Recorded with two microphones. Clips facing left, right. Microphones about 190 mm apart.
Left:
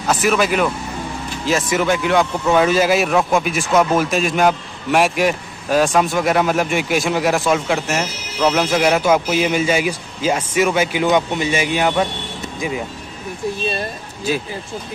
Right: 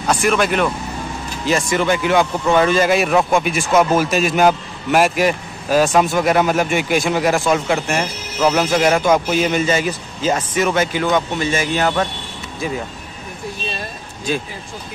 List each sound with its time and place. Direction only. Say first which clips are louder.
0.0 s speech: even; 5° left (ahead or behind)